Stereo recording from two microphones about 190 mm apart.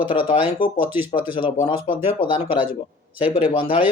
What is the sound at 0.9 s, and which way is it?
Speech, 10° right (ahead or behind).